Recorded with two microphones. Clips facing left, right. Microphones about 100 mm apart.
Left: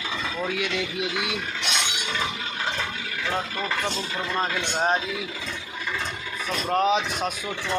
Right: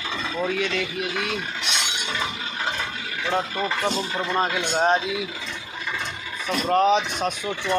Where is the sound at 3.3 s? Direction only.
20° right (ahead or behind).